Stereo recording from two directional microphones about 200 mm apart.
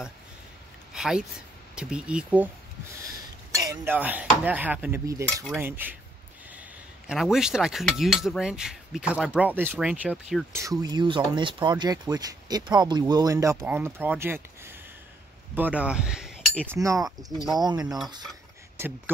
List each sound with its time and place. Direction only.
0.9 s speech: 5° right (ahead or behind)
3.5 s speech: 15° right (ahead or behind)
7.1 s speech: centre (ahead or behind)
10.5 s speech: 15° right (ahead or behind)
17.6 s a sound: 20° right (ahead or behind)
17.8 s speech: centre (ahead or behind)